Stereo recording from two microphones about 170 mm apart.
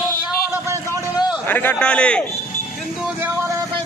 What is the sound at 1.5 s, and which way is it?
Speech, 10° left (ahead or behind).